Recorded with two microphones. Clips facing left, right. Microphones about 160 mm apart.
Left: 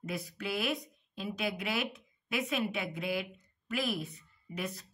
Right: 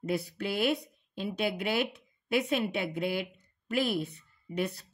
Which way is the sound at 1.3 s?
30° right (ahead or behind).